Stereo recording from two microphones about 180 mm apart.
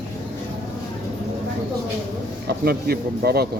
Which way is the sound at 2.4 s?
60° right (ahead or behind).